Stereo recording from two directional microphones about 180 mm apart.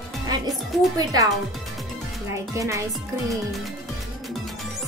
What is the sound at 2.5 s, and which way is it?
Speech, 15° right (ahead or behind).